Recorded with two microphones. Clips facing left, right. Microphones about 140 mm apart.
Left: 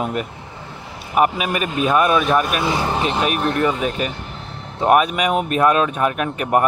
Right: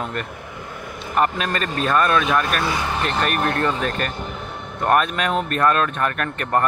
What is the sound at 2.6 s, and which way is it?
Speech, 25° left (ahead or behind).